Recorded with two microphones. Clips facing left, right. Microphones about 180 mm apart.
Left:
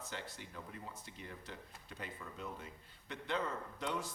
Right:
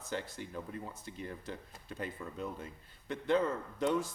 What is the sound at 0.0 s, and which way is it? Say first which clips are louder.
Speech: right 7 dB; 50° right (ahead or behind).